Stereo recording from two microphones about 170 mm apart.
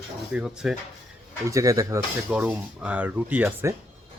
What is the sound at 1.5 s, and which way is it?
Speech, 20° right (ahead or behind).